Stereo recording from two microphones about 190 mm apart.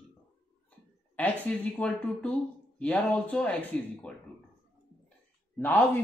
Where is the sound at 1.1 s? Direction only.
10° left (ahead or behind).